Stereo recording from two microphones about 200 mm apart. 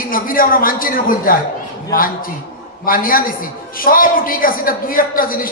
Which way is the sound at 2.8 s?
45° left (ahead or behind).